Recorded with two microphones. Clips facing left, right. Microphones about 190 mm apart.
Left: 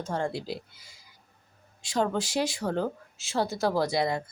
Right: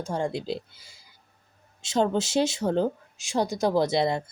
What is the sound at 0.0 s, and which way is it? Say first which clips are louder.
Speech: right 2 dB; 15° right (ahead or behind).